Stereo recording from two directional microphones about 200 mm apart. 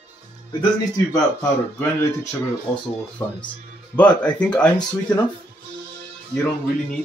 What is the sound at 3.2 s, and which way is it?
Speech, 10° left (ahead or behind).